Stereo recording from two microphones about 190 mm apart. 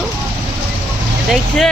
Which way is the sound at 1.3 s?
Centre (ahead or behind).